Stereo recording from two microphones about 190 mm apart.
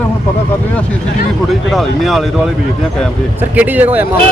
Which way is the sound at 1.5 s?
Centre (ahead or behind).